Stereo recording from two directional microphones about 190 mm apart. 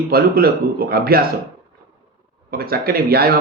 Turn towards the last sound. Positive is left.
turn(degrees=-55)  # may be behind; listen again after turning